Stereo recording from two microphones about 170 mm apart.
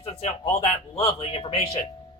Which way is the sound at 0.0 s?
40° left (ahead or behind).